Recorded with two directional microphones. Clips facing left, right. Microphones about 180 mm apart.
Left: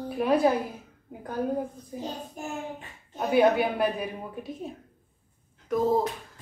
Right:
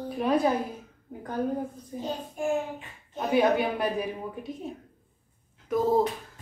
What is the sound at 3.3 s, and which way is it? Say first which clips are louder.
Speech: left 2 dB; 5° left (ahead or behind).